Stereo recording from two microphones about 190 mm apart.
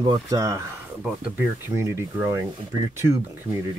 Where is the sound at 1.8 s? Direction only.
15° right (ahead or behind).